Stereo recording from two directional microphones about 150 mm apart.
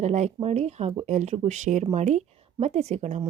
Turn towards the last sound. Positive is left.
turn(degrees=-45)  # may be behind; listen again after turning